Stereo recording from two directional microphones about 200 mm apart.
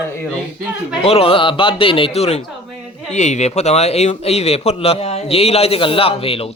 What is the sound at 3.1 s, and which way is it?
Speech, 35° left (ahead or behind).